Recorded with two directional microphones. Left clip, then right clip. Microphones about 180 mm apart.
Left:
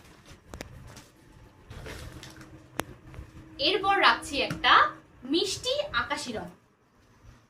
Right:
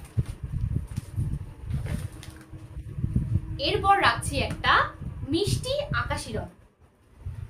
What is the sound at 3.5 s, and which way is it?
A woman's voice, 25° right (ahead or behind).